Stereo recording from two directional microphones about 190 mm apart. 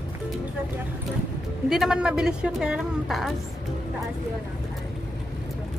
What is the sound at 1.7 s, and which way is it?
A woman's voice, centre (ahead or behind).